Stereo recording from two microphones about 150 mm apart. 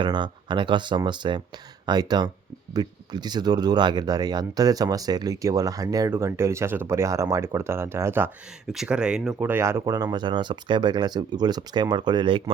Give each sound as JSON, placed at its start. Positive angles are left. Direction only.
{"t": 0.0, "sound": "speech", "side_deg": -30}
{"t": 8.7, "sound": "speech", "side_deg": -5}